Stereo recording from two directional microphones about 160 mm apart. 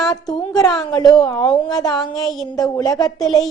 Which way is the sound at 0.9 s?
25° left (ahead or behind).